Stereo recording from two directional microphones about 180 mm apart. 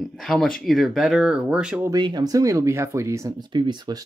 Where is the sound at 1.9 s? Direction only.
25° right (ahead or behind).